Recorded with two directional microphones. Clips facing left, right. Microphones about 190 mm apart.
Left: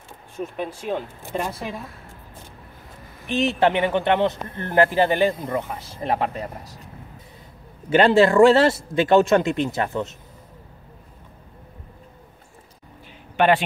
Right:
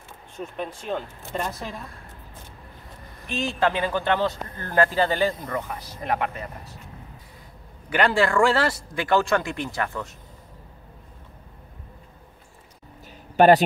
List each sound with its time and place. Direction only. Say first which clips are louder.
0.4 s speech: left 3 dB; 5° left (ahead or behind)
3.3 s speech: left 5 dB; 20° left (ahead or behind); by 6.9 s 35° left (ahead or behind)
7.9 s speech: left 6 dB; 25° left (ahead or behind)
13.4 s a man's voice: right 4 dB; 40° right (ahead or behind)